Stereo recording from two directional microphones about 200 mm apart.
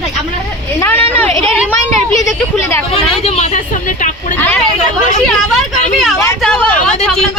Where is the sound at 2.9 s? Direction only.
30° left (ahead or behind).